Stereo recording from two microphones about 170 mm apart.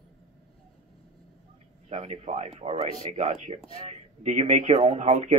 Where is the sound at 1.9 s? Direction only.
40° right (ahead or behind).